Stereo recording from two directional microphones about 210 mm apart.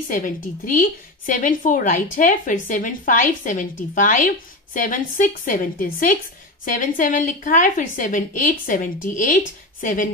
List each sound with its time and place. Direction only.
0.7 s a woman's voice: 40° left (ahead or behind)